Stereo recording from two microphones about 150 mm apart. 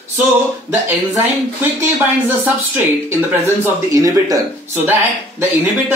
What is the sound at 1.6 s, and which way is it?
Speech, 15° right (ahead or behind).